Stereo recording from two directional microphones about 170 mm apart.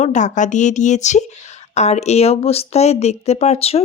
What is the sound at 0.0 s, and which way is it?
Speech, 45° left (ahead or behind).